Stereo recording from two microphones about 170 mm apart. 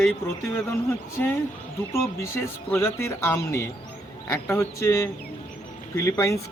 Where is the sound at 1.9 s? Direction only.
15° left (ahead or behind).